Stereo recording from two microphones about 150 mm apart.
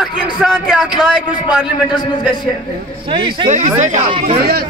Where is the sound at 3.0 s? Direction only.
35° right (ahead or behind).